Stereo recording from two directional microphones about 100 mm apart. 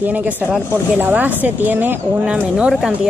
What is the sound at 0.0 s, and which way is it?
Speech, 15° right (ahead or behind).